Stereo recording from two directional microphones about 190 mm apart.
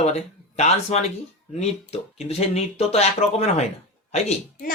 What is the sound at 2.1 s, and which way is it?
Speech, 35° left (ahead or behind).